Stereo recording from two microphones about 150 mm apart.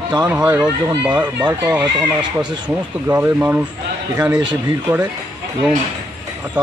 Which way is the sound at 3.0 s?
15° right (ahead or behind).